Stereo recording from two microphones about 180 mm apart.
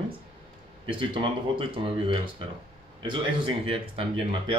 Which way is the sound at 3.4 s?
30° right (ahead or behind).